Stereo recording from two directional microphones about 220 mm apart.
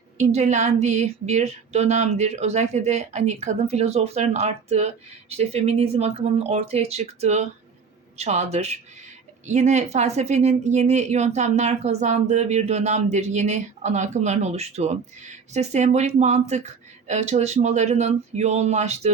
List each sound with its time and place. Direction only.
0.2 s speech: 30° right (ahead or behind)